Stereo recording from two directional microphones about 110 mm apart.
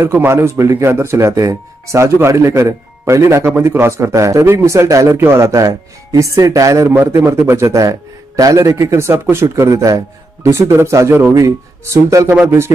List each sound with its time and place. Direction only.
0.0 s speech: 20° right (ahead or behind)